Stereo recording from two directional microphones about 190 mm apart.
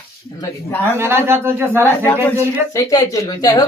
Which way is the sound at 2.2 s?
10° right (ahead or behind).